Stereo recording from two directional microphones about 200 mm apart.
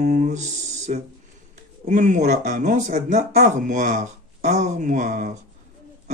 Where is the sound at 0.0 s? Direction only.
45° right (ahead or behind).